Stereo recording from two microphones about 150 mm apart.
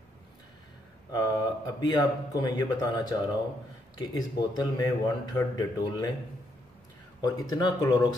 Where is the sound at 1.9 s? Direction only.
25° left (ahead or behind).